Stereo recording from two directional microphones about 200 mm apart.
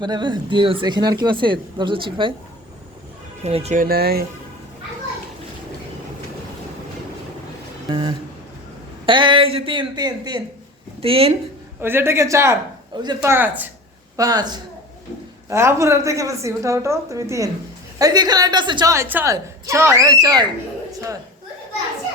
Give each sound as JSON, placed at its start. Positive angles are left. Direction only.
{"t": 0.0, "sound": "speech", "side_deg": -20}
{"t": 3.4, "sound": "speech", "side_deg": -30}
{"t": 3.8, "sound": "speech", "side_deg": -50}
{"t": 7.9, "sound": "speech", "side_deg": -25}
{"t": 11.8, "sound": "a woman's voice", "side_deg": -10}